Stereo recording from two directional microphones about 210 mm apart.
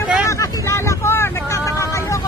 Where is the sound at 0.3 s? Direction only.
15° left (ahead or behind).